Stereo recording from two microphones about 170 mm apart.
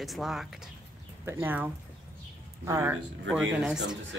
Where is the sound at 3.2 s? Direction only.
5° right (ahead or behind).